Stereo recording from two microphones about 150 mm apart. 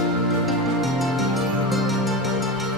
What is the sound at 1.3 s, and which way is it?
Music, centre (ahead or behind).